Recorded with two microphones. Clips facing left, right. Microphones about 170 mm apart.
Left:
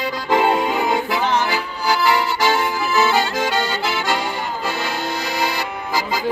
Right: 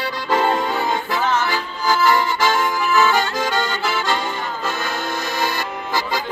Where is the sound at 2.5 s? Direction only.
20° left (ahead or behind).